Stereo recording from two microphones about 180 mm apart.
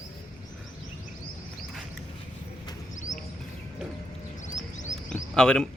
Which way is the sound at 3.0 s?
45° left (ahead or behind).